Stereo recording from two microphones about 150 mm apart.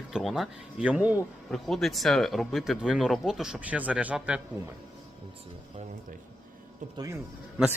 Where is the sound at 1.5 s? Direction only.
Centre (ahead or behind).